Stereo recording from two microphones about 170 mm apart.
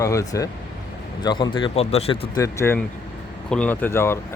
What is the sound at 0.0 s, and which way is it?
A man's voice, 20° left (ahead or behind).